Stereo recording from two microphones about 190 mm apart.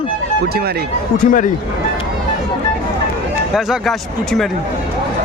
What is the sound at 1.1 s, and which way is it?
Speech, 45° left (ahead or behind).